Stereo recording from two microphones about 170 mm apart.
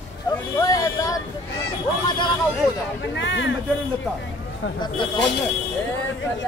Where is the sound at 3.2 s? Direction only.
90° left.